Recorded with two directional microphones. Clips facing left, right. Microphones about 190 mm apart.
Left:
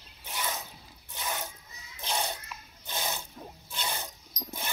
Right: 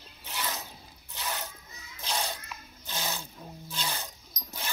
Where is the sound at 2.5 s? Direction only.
Centre (ahead or behind).